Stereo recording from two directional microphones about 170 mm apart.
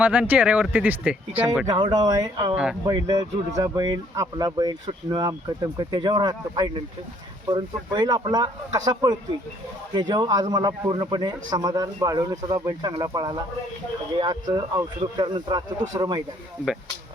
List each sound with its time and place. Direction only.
0.0 s speech: 10° right (ahead or behind)
1.6 s a man's voice: 25° right (ahead or behind)